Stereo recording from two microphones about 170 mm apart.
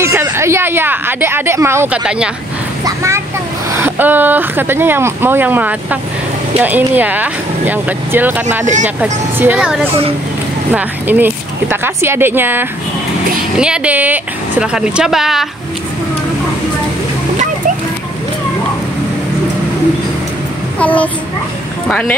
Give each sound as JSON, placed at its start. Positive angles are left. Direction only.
{"t": 0.0, "sound": "a woman's voice", "side_deg": -15}
{"t": 2.8, "sound": "a sound", "side_deg": -20}
{"t": 3.7, "sound": "a woman's voice", "side_deg": -10}
{"t": 20.8, "sound": "a child's voice", "side_deg": 10}